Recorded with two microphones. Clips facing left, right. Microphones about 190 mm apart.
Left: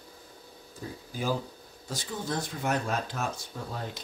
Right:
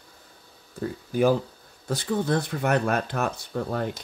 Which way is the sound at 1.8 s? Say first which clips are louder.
Right 9 dB; 60° right (ahead or behind).